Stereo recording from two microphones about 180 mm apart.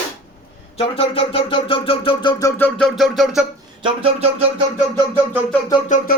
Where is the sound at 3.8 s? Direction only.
30° right (ahead or behind).